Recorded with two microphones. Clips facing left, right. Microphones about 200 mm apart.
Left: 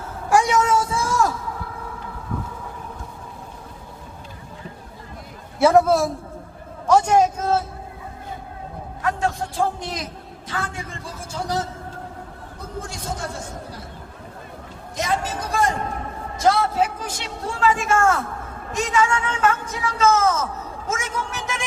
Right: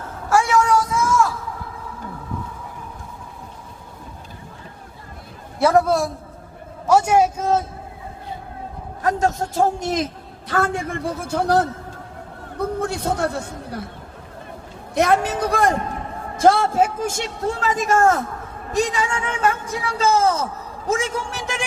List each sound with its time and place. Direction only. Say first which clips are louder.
0.3 s a sound: right 1 dB; 15° left (ahead or behind); by 1.3 s 35° left (ahead or behind)
5.7 s a man's voice: left 1 dB; centre (ahead or behind)
9.0 s a man's voice: right 4 dB; 40° right (ahead or behind)
10.5 s a man's voice: right 9 dB; 55° right (ahead or behind)
14.9 s a man's voice: right 7 dB; 60° right (ahead or behind); by 21.5 s 30° right (ahead or behind)